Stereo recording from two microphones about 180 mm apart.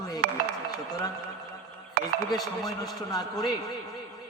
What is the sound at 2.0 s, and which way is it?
Speech, 60° right (ahead or behind).